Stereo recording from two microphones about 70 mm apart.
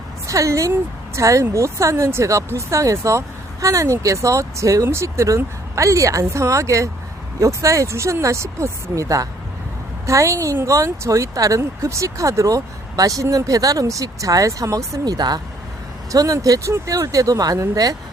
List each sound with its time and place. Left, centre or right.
0.3 s speech: right
15.0 s speech: right
16.1 s speech: right